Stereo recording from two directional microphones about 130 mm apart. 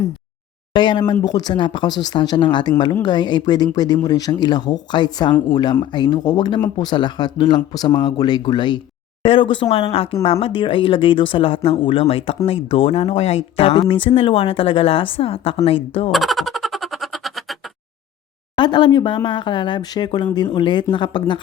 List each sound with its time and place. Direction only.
0.7 s speech: 35° left (ahead or behind)
16.1 s a sound: centre (ahead or behind)
18.5 s speech: 35° left (ahead or behind)